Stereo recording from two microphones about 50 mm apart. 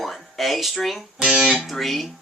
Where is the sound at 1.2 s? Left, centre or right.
Centre.